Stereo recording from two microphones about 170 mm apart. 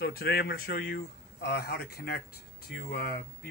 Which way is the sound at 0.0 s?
65° left (ahead or behind).